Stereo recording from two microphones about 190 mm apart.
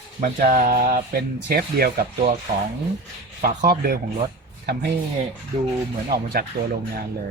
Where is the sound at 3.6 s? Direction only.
50° right (ahead or behind).